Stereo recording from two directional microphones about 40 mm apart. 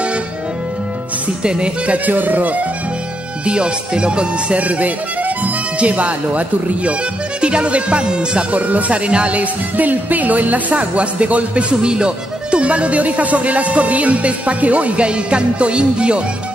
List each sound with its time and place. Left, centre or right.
1.4 s speech: right
1.9 s speech: right
3.4 s speech: right
8.5 s speech: right